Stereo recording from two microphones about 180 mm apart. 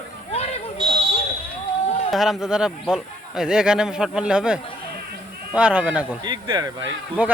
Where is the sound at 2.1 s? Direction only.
Centre (ahead or behind).